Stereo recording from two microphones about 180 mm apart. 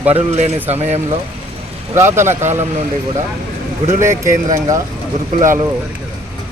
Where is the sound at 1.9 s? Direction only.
15° right (ahead or behind).